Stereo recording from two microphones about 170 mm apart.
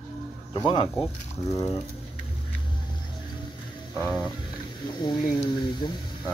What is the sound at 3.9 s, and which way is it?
Music, 5° right (ahead or behind).